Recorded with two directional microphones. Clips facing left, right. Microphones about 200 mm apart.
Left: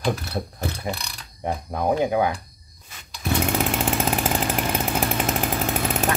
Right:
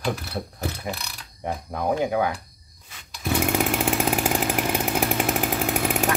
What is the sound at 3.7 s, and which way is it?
Chainsaw, 10° right (ahead or behind).